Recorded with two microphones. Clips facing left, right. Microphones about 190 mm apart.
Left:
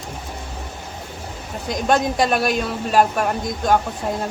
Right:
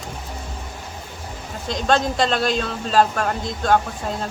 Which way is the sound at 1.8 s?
15° left (ahead or behind).